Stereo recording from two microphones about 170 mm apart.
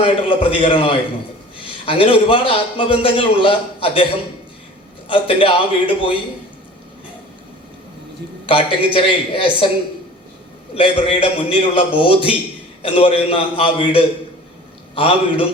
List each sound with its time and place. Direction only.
0.0 s a man's voice: 30° left (ahead or behind)
8.4 s a man's voice: 30° left (ahead or behind)
10.8 s a man's voice: 30° left (ahead or behind)